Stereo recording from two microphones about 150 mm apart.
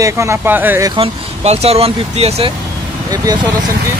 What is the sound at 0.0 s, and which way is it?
Speech, 20° right (ahead or behind).